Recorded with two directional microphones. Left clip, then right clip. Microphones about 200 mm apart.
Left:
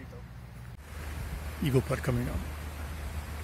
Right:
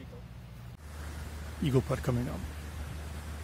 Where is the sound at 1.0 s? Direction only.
30° left (ahead or behind).